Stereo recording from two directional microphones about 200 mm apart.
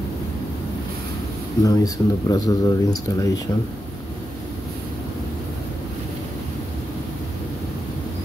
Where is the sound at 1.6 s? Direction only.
15° left (ahead or behind).